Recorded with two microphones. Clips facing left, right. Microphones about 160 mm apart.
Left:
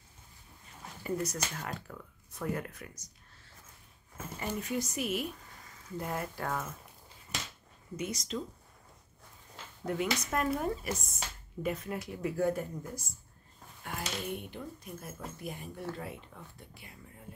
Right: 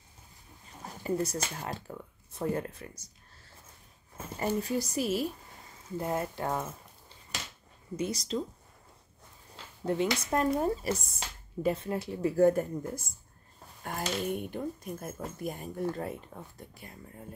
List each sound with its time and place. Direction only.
0.8 s speech: 30° right (ahead or behind)
4.4 s speech: 35° right (ahead or behind)
7.9 s speech: 30° right (ahead or behind)
9.8 s speech: 30° right (ahead or behind)